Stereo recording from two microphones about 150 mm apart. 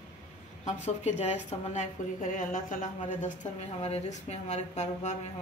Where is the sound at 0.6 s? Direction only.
50° left (ahead or behind).